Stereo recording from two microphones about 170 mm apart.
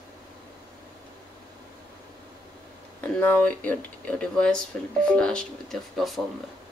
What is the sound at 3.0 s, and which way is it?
Speech, 10° left (ahead or behind).